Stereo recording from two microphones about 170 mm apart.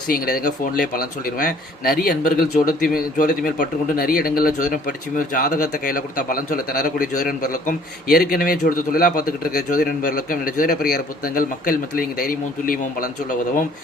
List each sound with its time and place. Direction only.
0.1 s a man's voice: 60° left (ahead or behind)